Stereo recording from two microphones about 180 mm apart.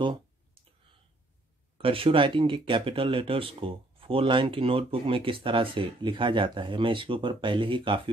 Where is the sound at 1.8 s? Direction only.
30° right (ahead or behind).